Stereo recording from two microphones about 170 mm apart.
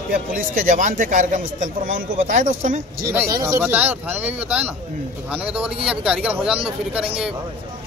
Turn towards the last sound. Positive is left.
turn(degrees=-5)  # may be behind; listen again after turning